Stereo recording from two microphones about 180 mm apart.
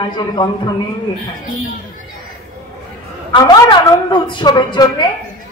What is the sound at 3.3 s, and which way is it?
A woman's voice, 25° left (ahead or behind).